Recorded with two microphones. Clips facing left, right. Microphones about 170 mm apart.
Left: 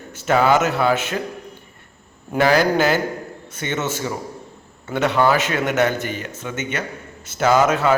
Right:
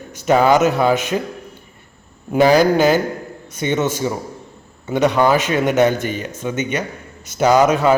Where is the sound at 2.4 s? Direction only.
15° right (ahead or behind).